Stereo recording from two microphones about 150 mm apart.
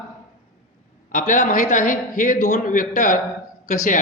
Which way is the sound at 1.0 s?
60° left (ahead or behind).